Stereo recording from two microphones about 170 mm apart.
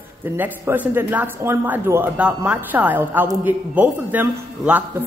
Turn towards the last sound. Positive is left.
turn(degrees=-10)  # may be behind; listen again after turning